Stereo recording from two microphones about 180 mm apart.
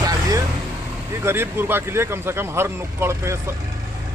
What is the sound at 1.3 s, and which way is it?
A man's voice, 10° right (ahead or behind).